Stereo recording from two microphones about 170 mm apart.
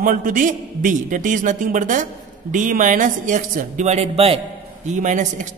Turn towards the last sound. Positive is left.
turn(degrees=-45)  # may be behind; listen again after turning